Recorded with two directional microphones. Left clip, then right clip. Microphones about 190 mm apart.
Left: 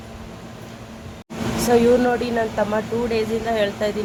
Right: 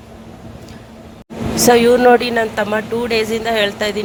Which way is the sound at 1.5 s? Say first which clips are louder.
Right 5 dB; 40° right (ahead or behind).